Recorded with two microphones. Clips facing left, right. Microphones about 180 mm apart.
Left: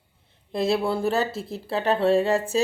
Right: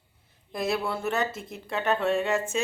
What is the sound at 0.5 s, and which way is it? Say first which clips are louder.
Speech: left 5 dB; 30° left (ahead or behind).